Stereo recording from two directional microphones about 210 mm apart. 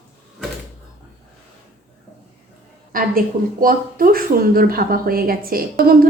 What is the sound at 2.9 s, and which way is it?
A woman's voice, 40° right (ahead or behind).